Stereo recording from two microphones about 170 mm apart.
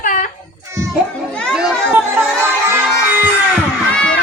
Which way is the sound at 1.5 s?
10° right (ahead or behind).